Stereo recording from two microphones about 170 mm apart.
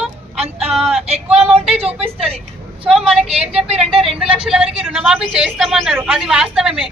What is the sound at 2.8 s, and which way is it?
Speech, centre (ahead or behind).